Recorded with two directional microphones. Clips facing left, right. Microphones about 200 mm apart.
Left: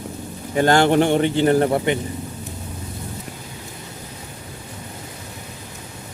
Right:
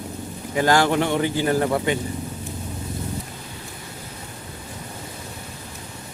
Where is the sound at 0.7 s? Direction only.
25° left (ahead or behind).